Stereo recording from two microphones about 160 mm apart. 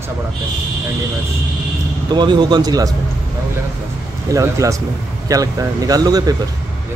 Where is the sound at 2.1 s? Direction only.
30° right (ahead or behind).